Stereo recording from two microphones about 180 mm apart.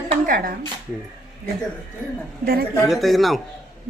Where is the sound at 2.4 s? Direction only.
60° right (ahead or behind).